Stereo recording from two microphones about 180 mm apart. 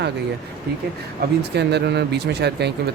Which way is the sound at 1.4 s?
70° right (ahead or behind).